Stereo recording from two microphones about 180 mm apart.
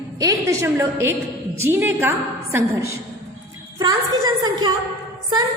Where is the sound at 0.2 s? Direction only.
20° right (ahead or behind).